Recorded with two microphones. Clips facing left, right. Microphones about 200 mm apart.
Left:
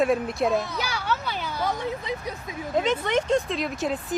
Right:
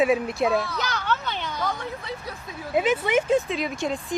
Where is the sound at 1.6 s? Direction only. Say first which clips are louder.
Left 6 dB; 20° left (ahead or behind).